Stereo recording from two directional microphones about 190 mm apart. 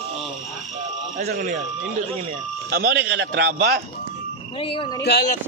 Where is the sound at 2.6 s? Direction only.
55° right (ahead or behind).